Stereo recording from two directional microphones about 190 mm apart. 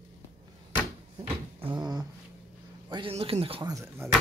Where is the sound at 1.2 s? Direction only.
25° right (ahead or behind).